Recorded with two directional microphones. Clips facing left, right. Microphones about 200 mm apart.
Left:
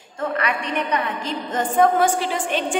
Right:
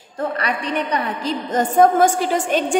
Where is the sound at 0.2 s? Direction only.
35° right (ahead or behind).